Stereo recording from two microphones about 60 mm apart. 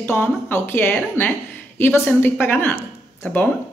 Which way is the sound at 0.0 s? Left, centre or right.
Left.